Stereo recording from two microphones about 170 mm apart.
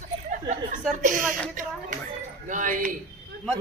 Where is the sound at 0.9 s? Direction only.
50° right (ahead or behind).